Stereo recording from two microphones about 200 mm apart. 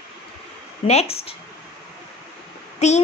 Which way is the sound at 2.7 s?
35° left (ahead or behind).